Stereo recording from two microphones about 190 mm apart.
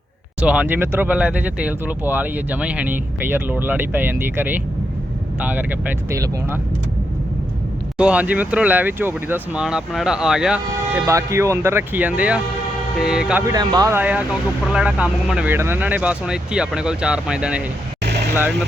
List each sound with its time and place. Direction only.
0.4 s speech: 5° right (ahead or behind)
7.9 s speech: 5° right (ahead or behind)
10.9 s speech: 15° right (ahead or behind)
13.5 s speech: 20° right (ahead or behind); by 17.6 s 5° right (ahead or behind)